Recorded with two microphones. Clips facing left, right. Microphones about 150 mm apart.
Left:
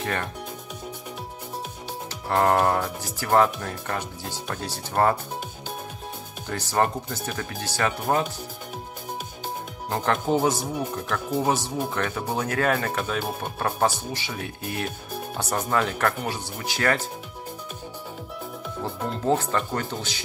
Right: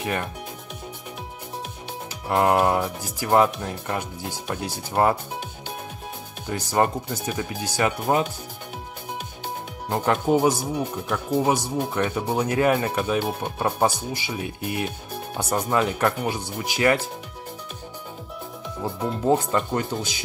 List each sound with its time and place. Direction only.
0.0 s speech: 10° right (ahead or behind)
2.2 s speech: 15° right (ahead or behind)
6.4 s speech: 15° right (ahead or behind)
9.8 s speech: 15° right (ahead or behind)
18.8 s speech: 10° right (ahead or behind)